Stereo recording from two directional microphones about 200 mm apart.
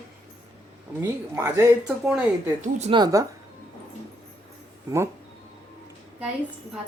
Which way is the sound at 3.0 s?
15° right (ahead or behind).